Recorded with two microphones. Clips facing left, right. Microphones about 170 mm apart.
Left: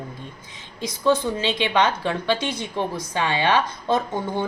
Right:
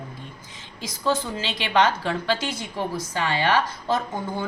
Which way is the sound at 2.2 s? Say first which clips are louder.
Left 2 dB; 20° left (ahead or behind).